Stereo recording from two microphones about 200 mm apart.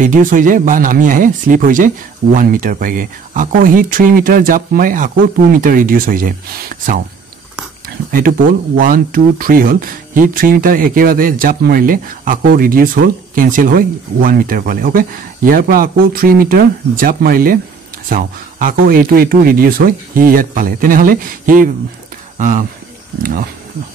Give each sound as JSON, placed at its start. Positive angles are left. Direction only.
{"t": 0.0, "sound": "speech", "side_deg": -40}
{"t": 8.1, "sound": "speech", "side_deg": -45}